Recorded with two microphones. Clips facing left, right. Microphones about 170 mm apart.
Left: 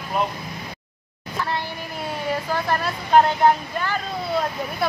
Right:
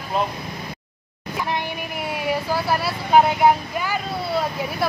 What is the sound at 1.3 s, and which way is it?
Speech, 15° right (ahead or behind).